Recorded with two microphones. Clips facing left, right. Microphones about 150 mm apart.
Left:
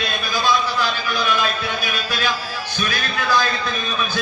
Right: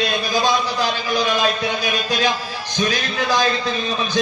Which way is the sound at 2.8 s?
35° right (ahead or behind).